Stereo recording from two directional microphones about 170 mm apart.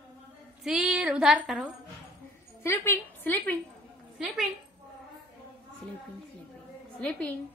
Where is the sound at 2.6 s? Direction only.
15° left (ahead or behind).